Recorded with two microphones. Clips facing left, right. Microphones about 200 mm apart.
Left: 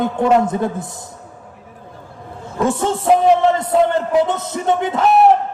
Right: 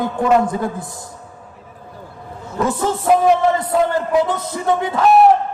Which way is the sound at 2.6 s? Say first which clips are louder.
Left 1 dB; 25° left (ahead or behind).